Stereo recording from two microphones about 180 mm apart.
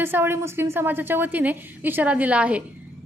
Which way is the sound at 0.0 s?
10° right (ahead or behind).